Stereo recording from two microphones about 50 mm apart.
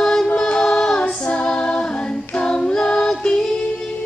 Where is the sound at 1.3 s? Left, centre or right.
Centre.